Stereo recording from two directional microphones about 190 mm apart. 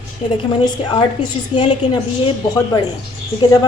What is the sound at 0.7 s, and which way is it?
A woman's voice, 25° left (ahead or behind).